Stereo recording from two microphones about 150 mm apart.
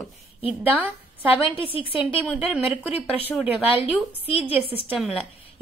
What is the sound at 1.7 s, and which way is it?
Speech, 35° left (ahead or behind).